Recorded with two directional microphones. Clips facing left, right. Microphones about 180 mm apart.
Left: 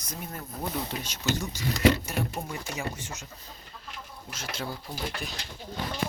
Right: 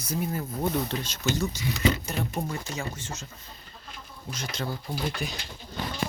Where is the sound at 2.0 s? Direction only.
10° left (ahead or behind).